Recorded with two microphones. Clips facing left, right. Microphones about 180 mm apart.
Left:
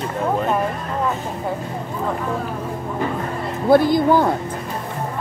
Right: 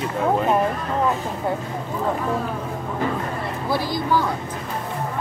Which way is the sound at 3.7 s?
55° left (ahead or behind).